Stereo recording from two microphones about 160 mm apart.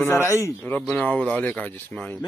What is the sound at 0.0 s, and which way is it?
Speech, 15° left (ahead or behind).